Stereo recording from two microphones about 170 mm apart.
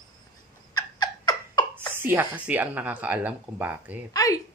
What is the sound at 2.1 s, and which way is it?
Speech, 10° right (ahead or behind).